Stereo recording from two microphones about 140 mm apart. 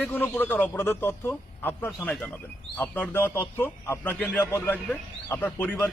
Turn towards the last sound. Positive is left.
turn(degrees=15)  # may be behind; listen again after turning